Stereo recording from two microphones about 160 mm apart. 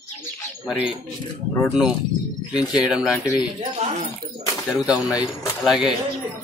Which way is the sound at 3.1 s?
20° left (ahead or behind).